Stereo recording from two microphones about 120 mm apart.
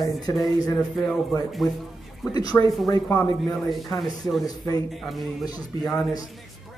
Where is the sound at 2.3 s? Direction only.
35° left (ahead or behind).